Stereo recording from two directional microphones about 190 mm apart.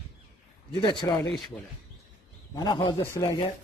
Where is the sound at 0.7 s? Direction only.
25° left (ahead or behind).